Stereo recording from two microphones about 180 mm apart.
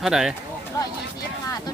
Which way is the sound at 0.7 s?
20° left (ahead or behind).